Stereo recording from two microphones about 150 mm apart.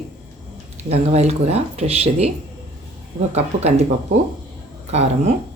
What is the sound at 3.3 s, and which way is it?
Speech, 45° right (ahead or behind).